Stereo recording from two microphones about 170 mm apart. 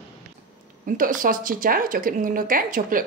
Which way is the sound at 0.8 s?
55° right (ahead or behind).